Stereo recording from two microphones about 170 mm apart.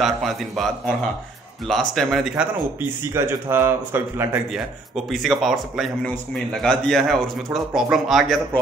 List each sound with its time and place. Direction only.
0.0 s a man's voice: centre (ahead or behind)
2.8 s speech: 15° right (ahead or behind)
4.5 s a man's voice: centre (ahead or behind)